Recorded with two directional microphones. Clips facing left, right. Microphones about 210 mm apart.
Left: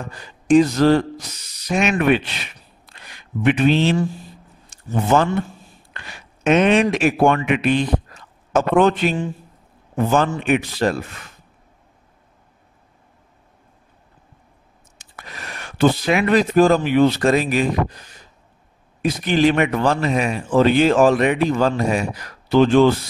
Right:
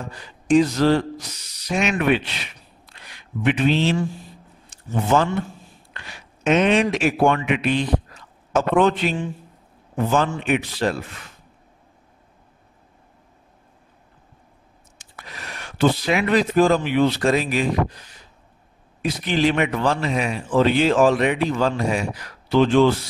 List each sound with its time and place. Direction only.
0.5 s a man's voice: 50° left (ahead or behind)
2.9 s a sound: 50° left (ahead or behind)
4.9 s a man's voice: 55° left (ahead or behind)
15.1 s a man's voice: 50° left (ahead or behind)